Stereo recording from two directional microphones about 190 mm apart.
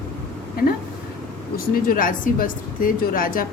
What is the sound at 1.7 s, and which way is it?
A woman's voice, 45° left (ahead or behind).